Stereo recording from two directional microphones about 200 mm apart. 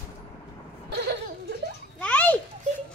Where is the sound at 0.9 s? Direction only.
55° right (ahead or behind).